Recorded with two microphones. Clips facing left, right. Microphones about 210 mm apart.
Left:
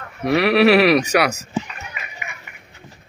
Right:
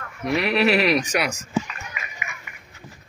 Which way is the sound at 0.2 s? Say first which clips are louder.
Left 6 dB; 65° left (ahead or behind).